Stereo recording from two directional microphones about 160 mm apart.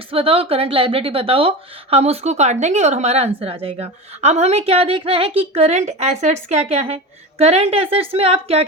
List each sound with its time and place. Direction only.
0.1 s a woman's voice: 35° right (ahead or behind)